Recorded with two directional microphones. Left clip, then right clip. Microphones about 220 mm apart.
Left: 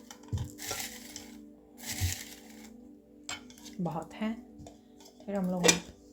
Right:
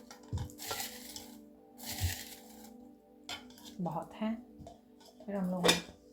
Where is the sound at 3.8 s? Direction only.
50° left (ahead or behind).